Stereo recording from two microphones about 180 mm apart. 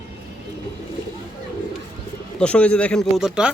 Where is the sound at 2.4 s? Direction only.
5° left (ahead or behind).